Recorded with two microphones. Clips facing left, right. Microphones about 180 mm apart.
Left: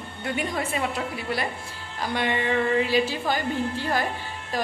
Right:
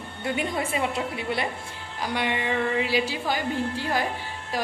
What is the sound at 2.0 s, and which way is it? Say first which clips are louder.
Speech: left 1 dB; 10° right (ahead or behind).